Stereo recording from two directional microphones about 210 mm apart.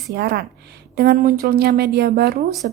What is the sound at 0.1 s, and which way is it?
A woman's voice, 50° right (ahead or behind).